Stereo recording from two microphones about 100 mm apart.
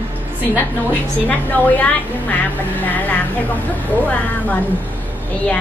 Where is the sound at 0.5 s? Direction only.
15° left (ahead or behind).